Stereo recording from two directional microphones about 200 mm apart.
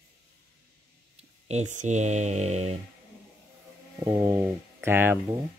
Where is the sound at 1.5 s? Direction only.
35° right (ahead or behind).